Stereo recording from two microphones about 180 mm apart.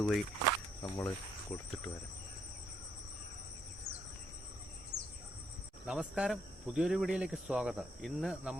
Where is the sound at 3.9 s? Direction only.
35° right (ahead or behind).